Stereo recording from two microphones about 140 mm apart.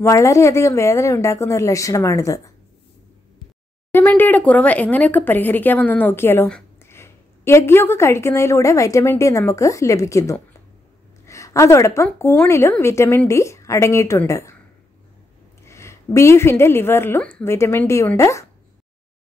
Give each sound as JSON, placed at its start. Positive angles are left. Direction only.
{"t": 0.0, "sound": "a woman's voice", "side_deg": 20}
{"t": 3.9, "sound": "a woman's voice", "side_deg": 15}
{"t": 15.6, "sound": "a woman's voice", "side_deg": 20}